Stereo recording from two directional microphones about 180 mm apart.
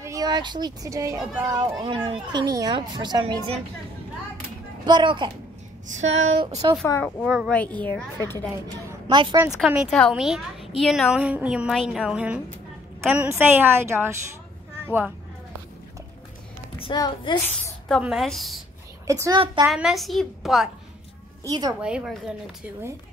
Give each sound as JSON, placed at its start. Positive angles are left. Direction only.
{"t": 0.0, "sound": "a woman's voice", "side_deg": -20}
{"t": 4.8, "sound": "a woman's voice", "side_deg": -25}
{"t": 6.9, "sound": "speech", "side_deg": 5}
{"t": 9.0, "sound": "speech", "side_deg": -25}
{"t": 9.7, "sound": "a woman's voice", "side_deg": 0}
{"t": 16.8, "sound": "a child's voice", "side_deg": 25}
{"t": 18.0, "sound": "a woman's voice", "side_deg": 0}
{"t": 19.0, "sound": "a woman's voice", "side_deg": -20}
{"t": 19.6, "sound": "a woman's voice", "side_deg": -5}
{"t": 21.5, "sound": "a woman's voice", "side_deg": -20}
{"t": 21.8, "sound": "a woman's voice", "side_deg": -5}